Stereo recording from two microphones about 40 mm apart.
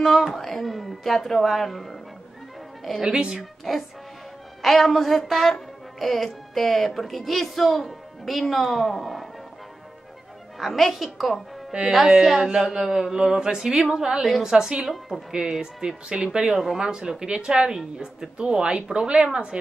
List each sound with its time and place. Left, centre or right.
0.0 s a woman's voice: centre
3.0 s speech: right
3.7 s a woman's voice: centre
10.7 s a woman's voice: centre
11.7 s speech: right
12.2 s speech: centre
14.9 s a woman's voice: centre
15.3 s speech: centre